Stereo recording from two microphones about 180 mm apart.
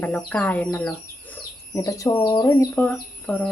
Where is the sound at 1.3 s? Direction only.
20° left (ahead or behind).